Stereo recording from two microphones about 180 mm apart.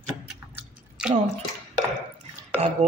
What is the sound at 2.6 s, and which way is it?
Speech, 40° right (ahead or behind).